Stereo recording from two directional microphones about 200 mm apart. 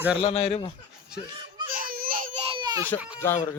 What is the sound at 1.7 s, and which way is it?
Baby cry, 45° right (ahead or behind).